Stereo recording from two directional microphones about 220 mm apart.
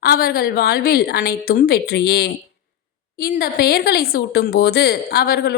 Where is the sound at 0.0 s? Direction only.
40° left (ahead or behind).